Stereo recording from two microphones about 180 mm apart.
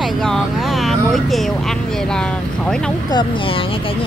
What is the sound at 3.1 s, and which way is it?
Speech, 25° left (ahead or behind).